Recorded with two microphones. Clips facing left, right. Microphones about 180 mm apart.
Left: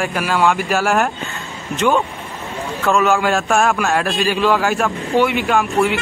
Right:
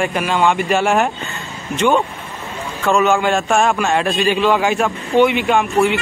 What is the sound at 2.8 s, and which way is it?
A man's voice, centre (ahead or behind).